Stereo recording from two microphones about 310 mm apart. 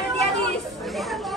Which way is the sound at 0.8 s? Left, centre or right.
Centre.